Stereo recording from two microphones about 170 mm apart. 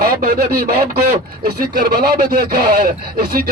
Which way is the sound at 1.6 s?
60° right (ahead or behind).